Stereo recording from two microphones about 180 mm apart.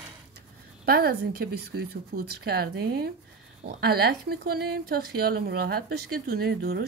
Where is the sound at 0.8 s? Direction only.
60° right (ahead or behind).